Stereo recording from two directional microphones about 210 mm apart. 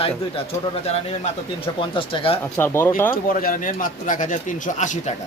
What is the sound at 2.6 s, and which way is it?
Speech, 10° left (ahead or behind).